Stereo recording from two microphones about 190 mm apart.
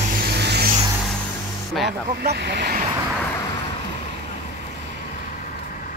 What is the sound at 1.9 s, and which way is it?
Speech, 65° right (ahead or behind).